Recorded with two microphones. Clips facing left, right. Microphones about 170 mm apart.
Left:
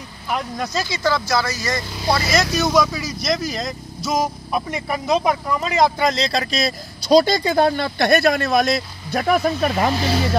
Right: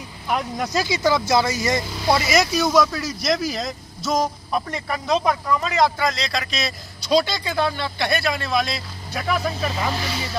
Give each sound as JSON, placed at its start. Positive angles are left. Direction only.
{"t": 0.3, "sound": "speech", "side_deg": -10}
{"t": 2.6, "sound": "speech", "side_deg": 0}